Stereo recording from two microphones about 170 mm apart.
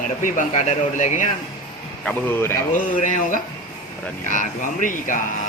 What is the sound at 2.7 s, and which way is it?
Speech, 50° left (ahead or behind).